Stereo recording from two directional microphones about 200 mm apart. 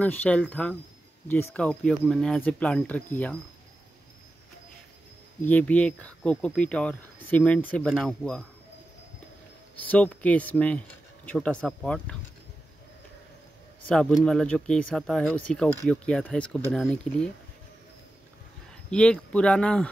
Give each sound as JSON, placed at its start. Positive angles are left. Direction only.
{"t": 0.0, "sound": "speech", "side_deg": 5}
{"t": 5.4, "sound": "speech", "side_deg": 10}
{"t": 9.8, "sound": "speech", "side_deg": 10}
{"t": 13.8, "sound": "speech", "side_deg": 5}
{"t": 18.9, "sound": "speech", "side_deg": 5}